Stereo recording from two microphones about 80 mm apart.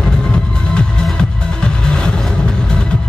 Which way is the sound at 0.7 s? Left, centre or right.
Centre.